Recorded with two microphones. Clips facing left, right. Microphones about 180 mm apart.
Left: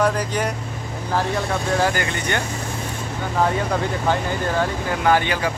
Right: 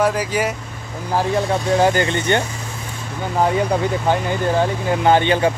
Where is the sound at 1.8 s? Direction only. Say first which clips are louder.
Right 5 dB; 25° right (ahead or behind).